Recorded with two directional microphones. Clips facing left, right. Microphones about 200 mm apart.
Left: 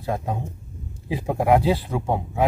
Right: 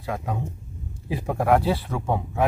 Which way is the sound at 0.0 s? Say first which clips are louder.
Left 2 dB; 30° left (ahead or behind).